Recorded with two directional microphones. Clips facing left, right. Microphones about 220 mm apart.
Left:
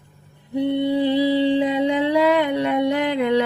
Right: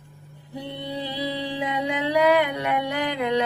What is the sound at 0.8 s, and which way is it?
Music, 25° left (ahead or behind).